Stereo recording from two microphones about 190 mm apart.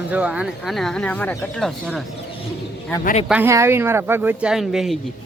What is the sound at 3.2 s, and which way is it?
Speech, 10° right (ahead or behind).